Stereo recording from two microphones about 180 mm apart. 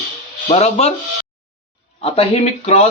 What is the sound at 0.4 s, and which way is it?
Speech, 35° left (ahead or behind).